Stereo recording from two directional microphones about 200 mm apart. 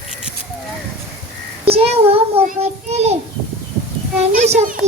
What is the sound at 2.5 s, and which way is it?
Speech, 30° right (ahead or behind).